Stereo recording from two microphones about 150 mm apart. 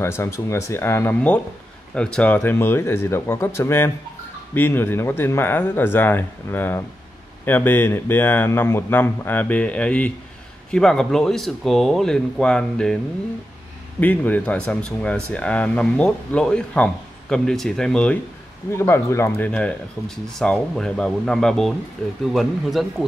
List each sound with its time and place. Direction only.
0.0 s speech: 20° left (ahead or behind)
18.8 s speech: 15° left (ahead or behind); by 23.0 s centre (ahead or behind)